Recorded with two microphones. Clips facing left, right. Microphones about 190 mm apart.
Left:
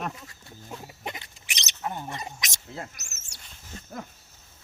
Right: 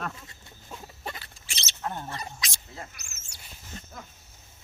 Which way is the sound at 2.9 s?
40° left (ahead or behind).